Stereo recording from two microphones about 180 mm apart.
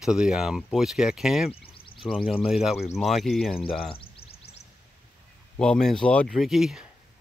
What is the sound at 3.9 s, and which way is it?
Music, 30° left (ahead or behind).